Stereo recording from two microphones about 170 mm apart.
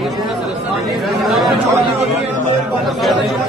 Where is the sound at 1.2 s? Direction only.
Centre (ahead or behind).